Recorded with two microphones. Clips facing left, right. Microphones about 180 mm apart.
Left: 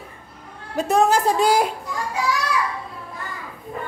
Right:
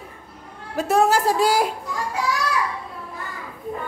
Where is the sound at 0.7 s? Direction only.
5° right (ahead or behind).